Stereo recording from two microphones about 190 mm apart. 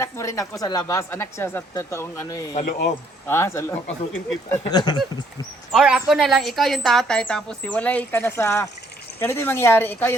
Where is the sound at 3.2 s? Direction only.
15° left (ahead or behind).